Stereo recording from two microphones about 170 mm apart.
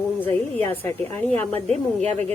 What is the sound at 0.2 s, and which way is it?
A woman's voice, 10° left (ahead or behind).